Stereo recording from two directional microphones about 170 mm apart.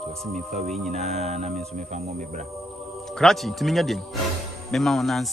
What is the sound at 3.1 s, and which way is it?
Speech, centre (ahead or behind).